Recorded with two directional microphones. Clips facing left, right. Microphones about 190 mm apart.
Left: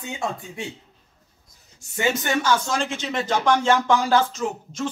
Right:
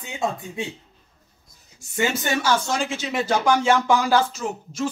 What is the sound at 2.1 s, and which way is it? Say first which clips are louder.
Speech: left 3 dB; 10° right (ahead or behind).